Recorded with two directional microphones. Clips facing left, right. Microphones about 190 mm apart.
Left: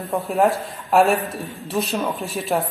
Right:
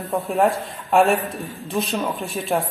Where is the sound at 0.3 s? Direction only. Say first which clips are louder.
Left 1 dB; centre (ahead or behind).